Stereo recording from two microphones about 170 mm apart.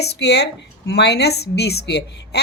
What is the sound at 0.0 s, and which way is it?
A woman's voice, 80° left.